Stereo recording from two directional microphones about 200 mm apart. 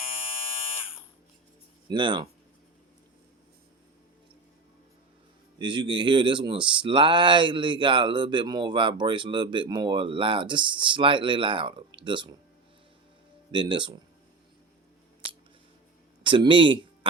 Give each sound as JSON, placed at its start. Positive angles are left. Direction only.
{"t": 1.9, "sound": "speech", "side_deg": -25}
{"t": 5.5, "sound": "speech", "side_deg": -25}
{"t": 13.5, "sound": "speech", "side_deg": -25}
{"t": 16.2, "sound": "speech", "side_deg": -25}